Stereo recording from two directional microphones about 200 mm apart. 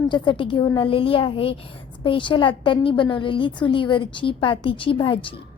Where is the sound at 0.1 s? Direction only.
25° left (ahead or behind).